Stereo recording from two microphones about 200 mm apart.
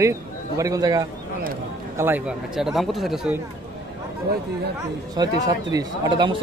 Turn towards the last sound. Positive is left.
turn(degrees=-25)  # may be behind; listen again after turning